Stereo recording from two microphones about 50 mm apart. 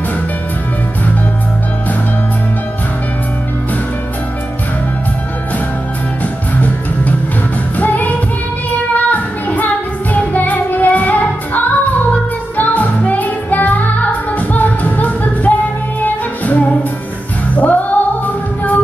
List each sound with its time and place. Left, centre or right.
6.5 s music: left
8.9 s child singing: left
10.1 s music: left